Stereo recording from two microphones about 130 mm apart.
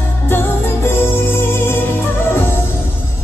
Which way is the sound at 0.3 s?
15° left (ahead or behind).